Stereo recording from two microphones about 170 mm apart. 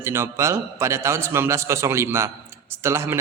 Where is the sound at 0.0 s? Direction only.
15° right (ahead or behind).